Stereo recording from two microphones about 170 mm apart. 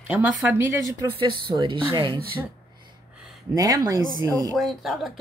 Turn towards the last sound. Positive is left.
turn(degrees=0)  # may be behind; listen again after turning